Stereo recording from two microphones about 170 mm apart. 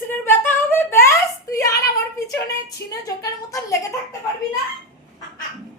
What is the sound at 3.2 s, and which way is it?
Speech, 20° left (ahead or behind).